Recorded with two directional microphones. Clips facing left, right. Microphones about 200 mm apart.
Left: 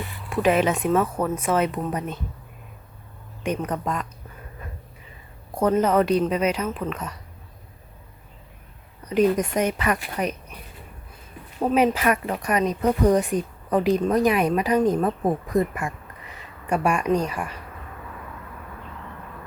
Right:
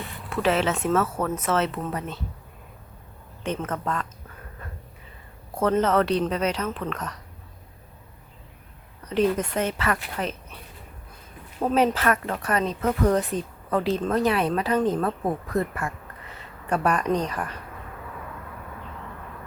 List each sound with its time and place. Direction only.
0.3 s speech: 15° left (ahead or behind)
3.4 s speech: 15° left (ahead or behind)
5.5 s speech: 10° left (ahead or behind)
9.0 s speech: 10° left (ahead or behind)
11.6 s speech: 10° left (ahead or behind)